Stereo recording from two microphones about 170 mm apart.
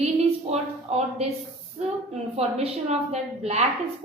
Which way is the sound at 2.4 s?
40° right (ahead or behind).